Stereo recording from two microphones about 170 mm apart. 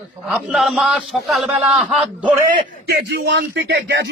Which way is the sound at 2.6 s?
80° right.